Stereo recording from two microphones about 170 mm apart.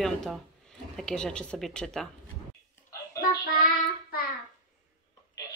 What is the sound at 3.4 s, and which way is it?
Child singing, 60° left (ahead or behind).